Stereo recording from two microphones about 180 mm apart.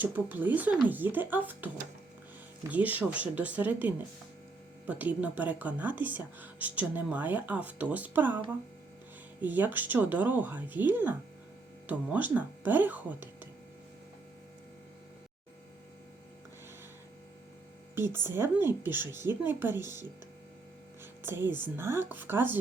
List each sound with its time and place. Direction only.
0.0 s speech: 10° right (ahead or behind)
9.4 s speech: 10° right (ahead or behind)
17.9 s speech: 15° right (ahead or behind)